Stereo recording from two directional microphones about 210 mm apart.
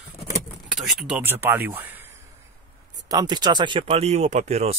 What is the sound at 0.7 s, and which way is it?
Speech, centre (ahead or behind).